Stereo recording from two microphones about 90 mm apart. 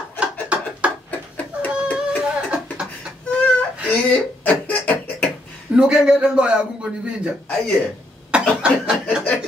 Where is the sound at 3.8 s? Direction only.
15° left (ahead or behind).